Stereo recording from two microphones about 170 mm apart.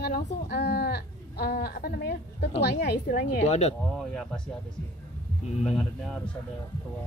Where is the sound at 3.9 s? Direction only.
5° left (ahead or behind).